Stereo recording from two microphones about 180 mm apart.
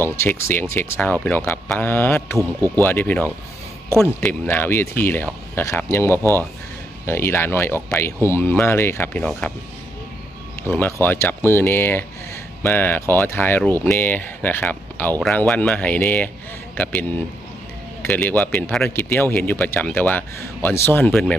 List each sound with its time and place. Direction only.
0.0 s speech: 15° left (ahead or behind)
2.4 s speech: 15° right (ahead or behind)
2.8 s speech: 10° left (ahead or behind)
10.7 s speech: 10° left (ahead or behind)